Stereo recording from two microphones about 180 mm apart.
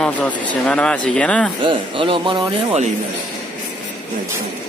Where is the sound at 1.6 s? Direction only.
30° right (ahead or behind).